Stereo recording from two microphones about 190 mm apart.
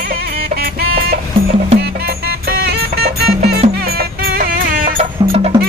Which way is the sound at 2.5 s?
55° right (ahead or behind).